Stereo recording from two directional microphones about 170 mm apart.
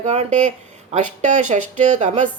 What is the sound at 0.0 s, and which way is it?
Speech, 45° right (ahead or behind).